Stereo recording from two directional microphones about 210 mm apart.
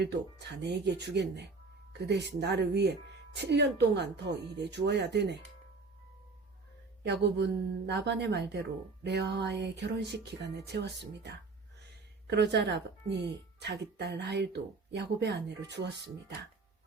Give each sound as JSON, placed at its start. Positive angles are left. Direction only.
{"t": 0.0, "sound": "speech", "side_deg": -55}
{"t": 7.0, "sound": "speech", "side_deg": -55}